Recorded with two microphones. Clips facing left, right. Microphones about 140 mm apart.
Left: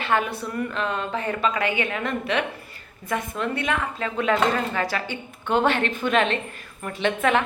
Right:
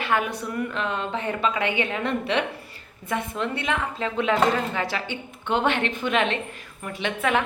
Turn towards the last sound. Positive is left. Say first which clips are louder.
# left 3 dB
turn(degrees=-10)  # may be behind; listen again after turning